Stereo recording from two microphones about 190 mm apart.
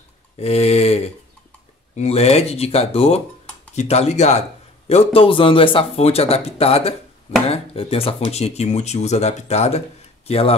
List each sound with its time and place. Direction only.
0.4 s a man's voice: 35° left (ahead or behind)